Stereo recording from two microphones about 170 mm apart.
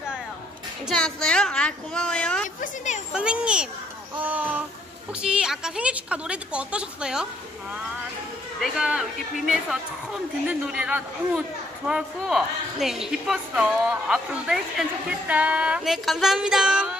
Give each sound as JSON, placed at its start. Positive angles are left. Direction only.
{"t": 0.8, "sound": "speech", "side_deg": 5}
{"t": 2.6, "sound": "speech", "side_deg": 45}
{"t": 3.1, "sound": "speech", "side_deg": -5}
{"t": 4.2, "sound": "a sound", "side_deg": -10}
{"t": 5.2, "sound": "speech", "side_deg": -5}
{"t": 8.5, "sound": "speech", "side_deg": -5}